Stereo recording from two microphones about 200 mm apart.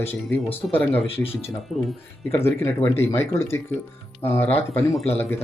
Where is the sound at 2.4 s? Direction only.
10° left (ahead or behind).